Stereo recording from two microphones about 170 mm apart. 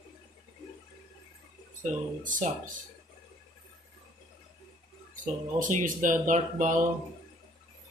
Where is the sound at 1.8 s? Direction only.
50° right (ahead or behind).